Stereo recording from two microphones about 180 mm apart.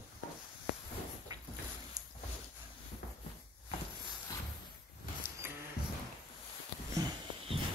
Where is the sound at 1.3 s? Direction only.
20° right (ahead or behind).